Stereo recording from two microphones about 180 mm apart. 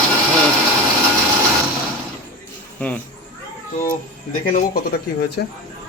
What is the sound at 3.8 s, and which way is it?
Speech, 50° left (ahead or behind).